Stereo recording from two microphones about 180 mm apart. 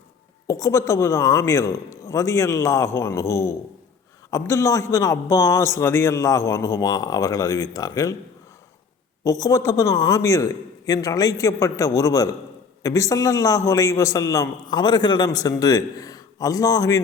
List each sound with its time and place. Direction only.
0.4 s a man's voice: 15° left (ahead or behind)
9.2 s a man's voice: 20° left (ahead or behind)